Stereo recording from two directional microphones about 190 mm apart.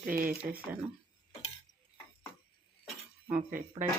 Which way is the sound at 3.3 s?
45° right (ahead or behind).